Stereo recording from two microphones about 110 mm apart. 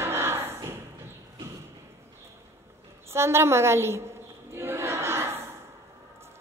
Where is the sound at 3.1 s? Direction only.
25° right (ahead or behind).